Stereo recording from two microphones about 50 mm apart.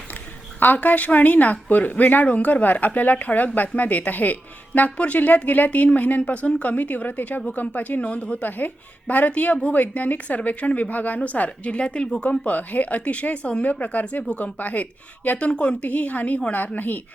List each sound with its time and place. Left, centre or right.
0.6 s speech: left
8.0 s speech: left
12.5 s speech: left